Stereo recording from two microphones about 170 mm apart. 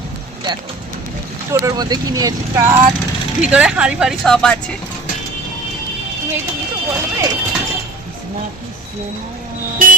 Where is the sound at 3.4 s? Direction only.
5° right (ahead or behind).